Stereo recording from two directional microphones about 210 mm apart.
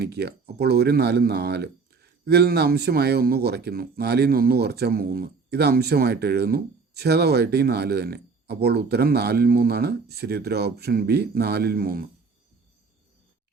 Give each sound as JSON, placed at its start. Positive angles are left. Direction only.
{"t": 0.0, "sound": "a man's voice", "side_deg": -50}